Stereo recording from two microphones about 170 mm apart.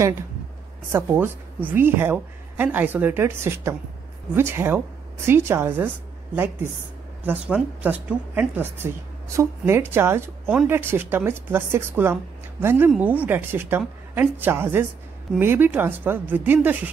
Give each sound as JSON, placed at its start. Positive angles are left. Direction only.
{"t": 0.8, "sound": "a woman's voice", "side_deg": -15}